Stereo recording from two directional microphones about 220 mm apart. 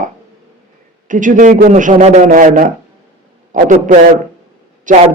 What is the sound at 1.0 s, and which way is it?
A man's voice, 35° right (ahead or behind).